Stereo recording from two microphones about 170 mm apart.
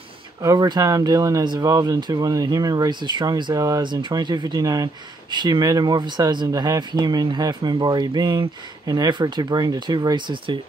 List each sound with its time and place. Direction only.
0.4 s speech: 20° right (ahead or behind)